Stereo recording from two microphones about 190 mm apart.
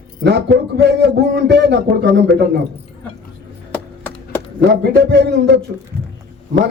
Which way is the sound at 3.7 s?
10° left (ahead or behind).